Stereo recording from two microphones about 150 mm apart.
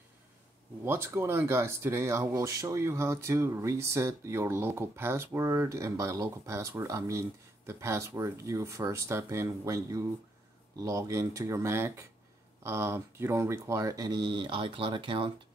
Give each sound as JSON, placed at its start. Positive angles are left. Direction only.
{"t": 0.8, "sound": "speech", "side_deg": -15}